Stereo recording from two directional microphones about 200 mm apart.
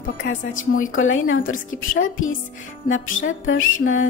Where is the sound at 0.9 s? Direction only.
80° left.